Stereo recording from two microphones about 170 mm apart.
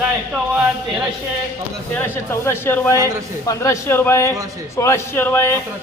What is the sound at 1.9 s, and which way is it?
A man's voice, 15° left (ahead or behind).